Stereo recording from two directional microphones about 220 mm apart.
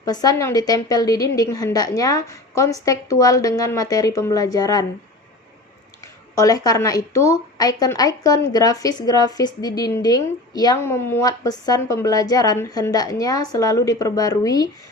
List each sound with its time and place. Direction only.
0.0 s a woman's voice: 15° left (ahead or behind)
6.3 s a woman's voice: 15° left (ahead or behind)